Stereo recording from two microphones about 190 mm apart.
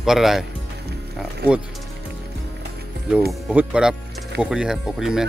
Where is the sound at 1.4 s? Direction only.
60° right (ahead or behind).